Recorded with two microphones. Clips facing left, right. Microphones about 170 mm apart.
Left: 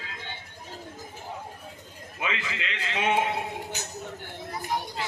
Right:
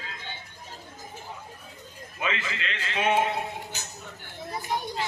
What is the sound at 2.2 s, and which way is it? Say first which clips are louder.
A man's voice: right 1 dB; 15° left (ahead or behind).